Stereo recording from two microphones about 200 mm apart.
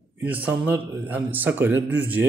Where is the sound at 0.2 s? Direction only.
10° right (ahead or behind).